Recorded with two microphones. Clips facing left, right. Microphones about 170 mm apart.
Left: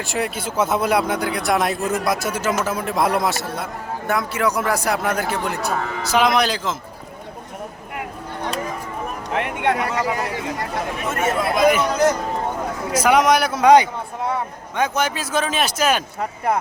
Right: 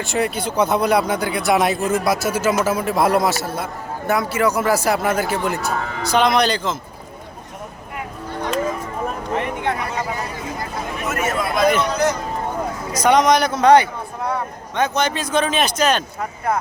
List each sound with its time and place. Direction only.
0.0 s speech: centre (ahead or behind)
9.4 s speech: 80° left
11.1 s speech: 30° left (ahead or behind)
11.6 s a man's voice: 5° left (ahead or behind)
12.9 s a man's voice: 5° left (ahead or behind)